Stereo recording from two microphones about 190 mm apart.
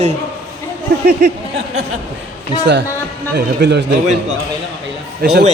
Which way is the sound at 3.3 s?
65° right (ahead or behind).